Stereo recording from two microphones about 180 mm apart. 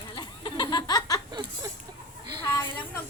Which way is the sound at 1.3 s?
20° right (ahead or behind).